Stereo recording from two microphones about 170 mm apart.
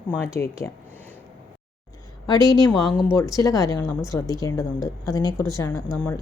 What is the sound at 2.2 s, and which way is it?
A woman's voice, 20° left (ahead or behind).